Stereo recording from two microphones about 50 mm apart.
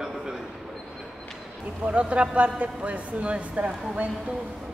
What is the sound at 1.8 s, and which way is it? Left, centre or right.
Speech, right.